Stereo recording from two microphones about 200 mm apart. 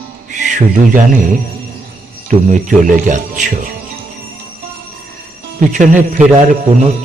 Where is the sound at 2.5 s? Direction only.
40° right (ahead or behind).